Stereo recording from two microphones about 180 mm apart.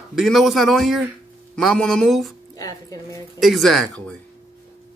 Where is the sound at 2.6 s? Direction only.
20° left (ahead or behind).